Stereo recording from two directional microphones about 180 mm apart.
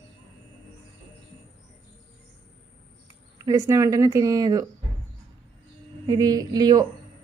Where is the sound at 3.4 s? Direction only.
15° right (ahead or behind).